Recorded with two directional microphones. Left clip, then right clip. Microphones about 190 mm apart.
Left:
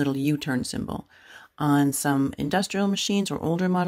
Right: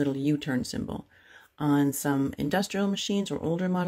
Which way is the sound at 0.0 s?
25° left (ahead or behind).